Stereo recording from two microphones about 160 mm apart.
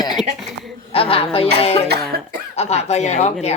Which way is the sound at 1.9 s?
80° right.